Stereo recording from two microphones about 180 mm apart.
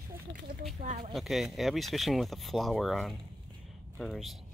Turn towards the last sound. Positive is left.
turn(degrees=0)  # may be behind; listen again after turning